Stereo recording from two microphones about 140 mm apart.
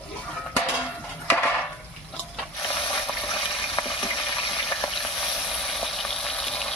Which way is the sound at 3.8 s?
30° left (ahead or behind).